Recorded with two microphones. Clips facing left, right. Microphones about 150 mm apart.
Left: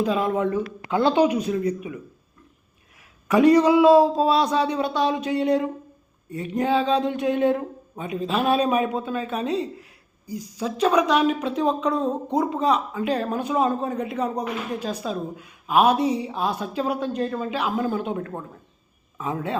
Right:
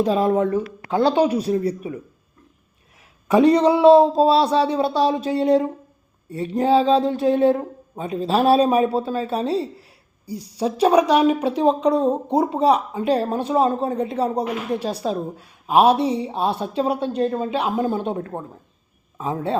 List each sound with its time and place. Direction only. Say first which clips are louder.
0.0 s speech: right 4 dB; 35° right (ahead or behind)
0.5 s speech: right 2 dB; 15° right (ahead or behind)
1.2 s speech: right 1 dB; 30° right (ahead or behind)
3.2 s a man's voice: right 1 dB; 25° right (ahead or behind)